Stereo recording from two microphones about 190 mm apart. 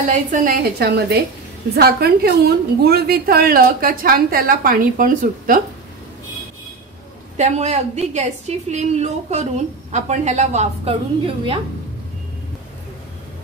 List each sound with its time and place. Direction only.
0.3 s a woman's voice: 45° right (ahead or behind)
7.3 s a woman's voice: 35° right (ahead or behind)